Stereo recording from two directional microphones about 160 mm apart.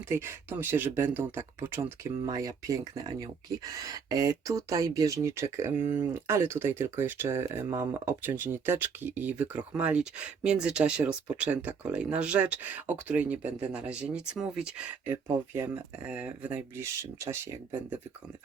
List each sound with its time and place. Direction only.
0.1 s speech: 15° right (ahead or behind)